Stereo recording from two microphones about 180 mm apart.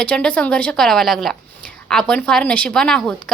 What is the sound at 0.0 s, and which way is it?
A woman's voice, 5° left (ahead or behind).